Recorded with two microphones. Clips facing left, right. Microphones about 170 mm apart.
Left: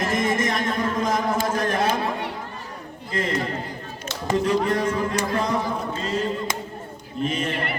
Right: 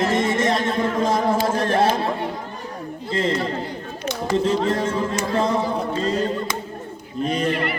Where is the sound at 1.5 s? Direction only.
30° right (ahead or behind).